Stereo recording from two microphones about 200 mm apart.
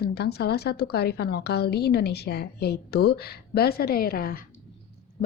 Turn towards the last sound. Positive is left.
turn(degrees=45)  # may be behind; listen again after turning